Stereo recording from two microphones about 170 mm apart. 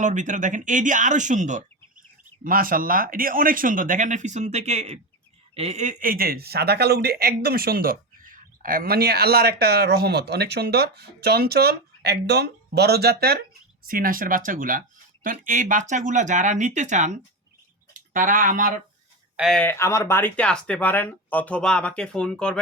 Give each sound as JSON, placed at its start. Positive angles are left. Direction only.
{"t": 0.0, "sound": "speech", "side_deg": -45}
{"t": 13.8, "sound": "speech", "side_deg": -55}
{"t": 19.4, "sound": "speech", "side_deg": 5}